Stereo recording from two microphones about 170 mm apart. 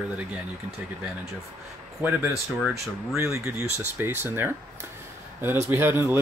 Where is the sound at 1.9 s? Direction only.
15° right (ahead or behind).